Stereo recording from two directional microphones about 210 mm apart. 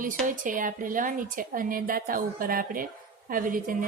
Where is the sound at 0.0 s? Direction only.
40° right (ahead or behind).